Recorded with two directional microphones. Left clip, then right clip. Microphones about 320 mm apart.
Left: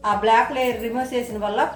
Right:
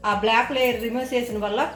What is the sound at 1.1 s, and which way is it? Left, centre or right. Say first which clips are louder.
Speech: even; centre.